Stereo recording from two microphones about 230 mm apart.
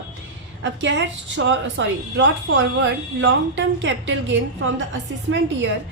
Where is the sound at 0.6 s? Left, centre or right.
Right.